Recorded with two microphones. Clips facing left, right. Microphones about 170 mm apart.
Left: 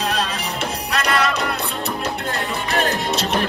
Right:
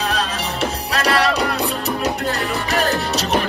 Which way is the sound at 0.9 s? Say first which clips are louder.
Right 2 dB; 35° right (ahead or behind).